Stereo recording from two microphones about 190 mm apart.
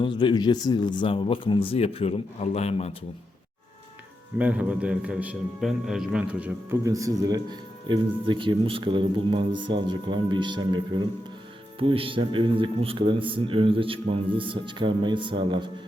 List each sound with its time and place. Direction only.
0.0 s speech: 25° left (ahead or behind)
4.4 s a man's voice: 5° right (ahead or behind); by 15.7 s 25° right (ahead or behind)